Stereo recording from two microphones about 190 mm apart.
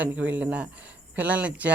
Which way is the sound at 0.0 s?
10° right (ahead or behind).